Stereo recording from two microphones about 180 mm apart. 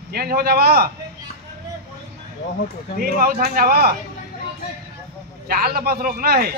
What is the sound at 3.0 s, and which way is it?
Speech, 55° right (ahead or behind).